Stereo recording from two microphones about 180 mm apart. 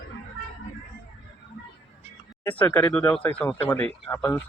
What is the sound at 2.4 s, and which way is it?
Speech, 10° left (ahead or behind).